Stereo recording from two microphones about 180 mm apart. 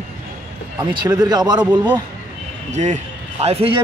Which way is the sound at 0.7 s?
10° right (ahead or behind).